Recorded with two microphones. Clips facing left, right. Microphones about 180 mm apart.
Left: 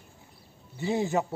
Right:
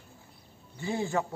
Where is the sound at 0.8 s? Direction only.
20° left (ahead or behind).